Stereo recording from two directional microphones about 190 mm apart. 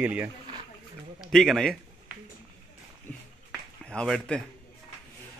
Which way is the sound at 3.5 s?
5° left (ahead or behind).